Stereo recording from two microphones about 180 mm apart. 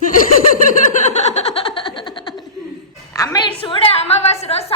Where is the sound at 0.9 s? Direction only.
40° left (ahead or behind).